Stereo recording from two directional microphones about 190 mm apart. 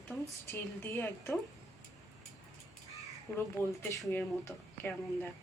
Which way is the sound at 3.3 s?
15° left (ahead or behind).